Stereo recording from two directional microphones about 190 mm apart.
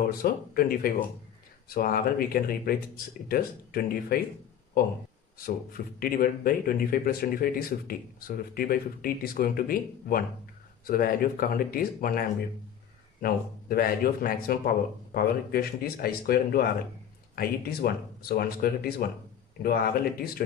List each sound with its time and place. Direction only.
0.0 s speech: 50° left (ahead or behind)
5.4 s speech: 50° left (ahead or behind)